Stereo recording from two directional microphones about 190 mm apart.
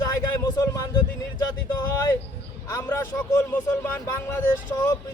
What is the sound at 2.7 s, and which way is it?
Speech, 15° left (ahead or behind).